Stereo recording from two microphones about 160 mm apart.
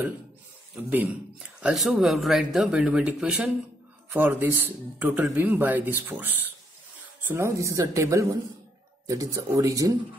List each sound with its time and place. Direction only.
0.7 s a woman's voice: 10° right (ahead or behind)